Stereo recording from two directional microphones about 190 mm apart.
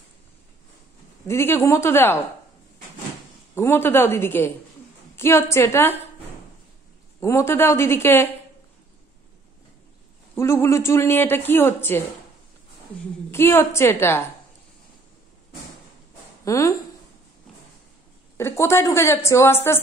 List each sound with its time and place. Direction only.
1.2 s a man's voice: 15° left (ahead or behind)
3.5 s a man's voice: 10° left (ahead or behind)
7.2 s a man's voice: 15° left (ahead or behind)
10.3 s a man's voice: 15° left (ahead or behind)
13.3 s a man's voice: 15° left (ahead or behind)
16.4 s a woman's voice: 15° left (ahead or behind)
18.4 s a man's voice: 15° left (ahead or behind)